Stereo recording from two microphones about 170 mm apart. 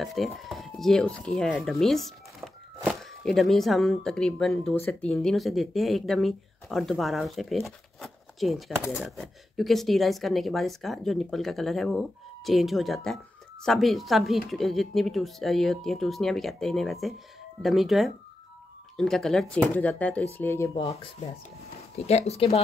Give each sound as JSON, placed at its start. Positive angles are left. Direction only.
{"t": 0.0, "sound": "speech", "side_deg": 0}
{"t": 20.7, "sound": "speech", "side_deg": 35}